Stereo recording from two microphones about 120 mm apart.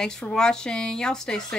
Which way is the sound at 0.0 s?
5° left (ahead or behind).